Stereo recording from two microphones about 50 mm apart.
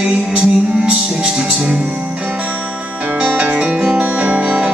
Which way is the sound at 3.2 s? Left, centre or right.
Right.